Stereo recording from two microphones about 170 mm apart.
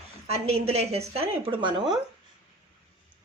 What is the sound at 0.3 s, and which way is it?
Speech, 40° right (ahead or behind).